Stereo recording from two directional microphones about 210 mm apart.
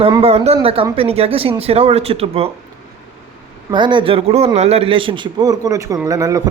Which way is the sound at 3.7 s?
20° right (ahead or behind).